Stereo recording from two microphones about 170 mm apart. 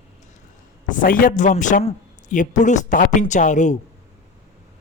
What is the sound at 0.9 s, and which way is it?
A man's voice, 50° left (ahead or behind).